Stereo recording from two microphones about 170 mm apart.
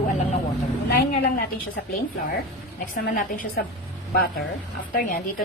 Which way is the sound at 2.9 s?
55° left (ahead or behind).